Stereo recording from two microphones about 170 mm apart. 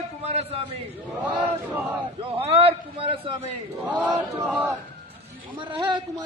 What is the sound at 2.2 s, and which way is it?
A man's voice, 35° right (ahead or behind).